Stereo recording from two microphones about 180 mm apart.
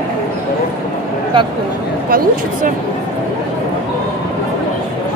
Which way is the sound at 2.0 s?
55° right (ahead or behind).